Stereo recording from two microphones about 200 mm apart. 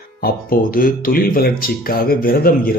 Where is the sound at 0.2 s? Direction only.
45° left (ahead or behind).